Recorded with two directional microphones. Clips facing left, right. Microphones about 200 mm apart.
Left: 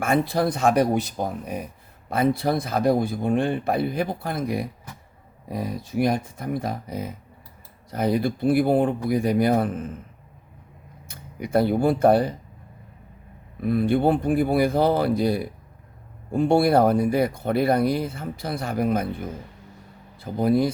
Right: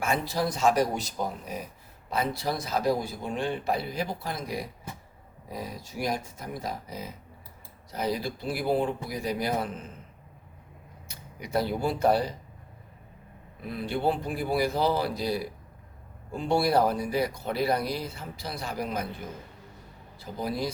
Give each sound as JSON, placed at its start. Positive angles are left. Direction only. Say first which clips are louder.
{"t": 0.0, "sound": "speech", "louder": "left 6 dB", "side_deg": 55}
{"t": 11.1, "sound": "speech", "louder": "left 7 dB", "side_deg": 55}
{"t": 13.6, "sound": "speech", "louder": "left 10 dB", "side_deg": 50}
{"t": 20.1, "sound": "speech", "louder": "left 11 dB", "side_deg": 55}